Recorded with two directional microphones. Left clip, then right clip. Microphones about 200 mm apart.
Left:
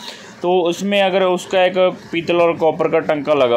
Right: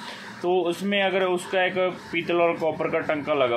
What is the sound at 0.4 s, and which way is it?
Speech, 40° left (ahead or behind).